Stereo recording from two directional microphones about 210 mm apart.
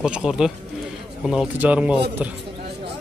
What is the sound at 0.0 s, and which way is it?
Speech, 5° right (ahead or behind).